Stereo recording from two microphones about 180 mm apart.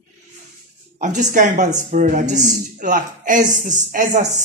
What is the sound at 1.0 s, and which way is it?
Speech, 40° right (ahead or behind).